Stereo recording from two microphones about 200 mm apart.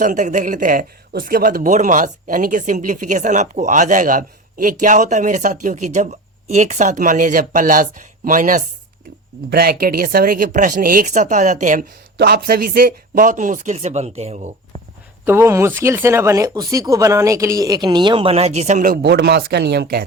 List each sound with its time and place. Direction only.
0.0 s a man's voice: 40° right (ahead or behind)
15.2 s speech: 15° right (ahead or behind); by 20.1 s 50° right (ahead or behind)